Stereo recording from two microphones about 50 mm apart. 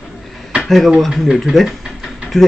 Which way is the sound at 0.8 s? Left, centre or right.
Centre.